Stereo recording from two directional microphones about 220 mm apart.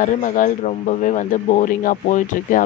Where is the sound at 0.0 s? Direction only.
35° left (ahead or behind).